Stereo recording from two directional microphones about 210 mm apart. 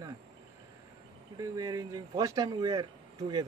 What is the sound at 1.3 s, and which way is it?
Speech, 15° right (ahead or behind).